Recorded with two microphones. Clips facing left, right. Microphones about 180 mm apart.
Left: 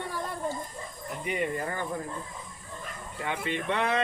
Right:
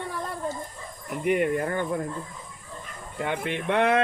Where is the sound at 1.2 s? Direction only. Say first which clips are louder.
Right 7 dB; 60° right (ahead or behind).